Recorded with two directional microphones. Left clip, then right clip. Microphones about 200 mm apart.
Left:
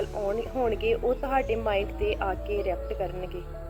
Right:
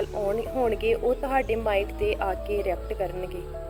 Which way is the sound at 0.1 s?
Centre (ahead or behind).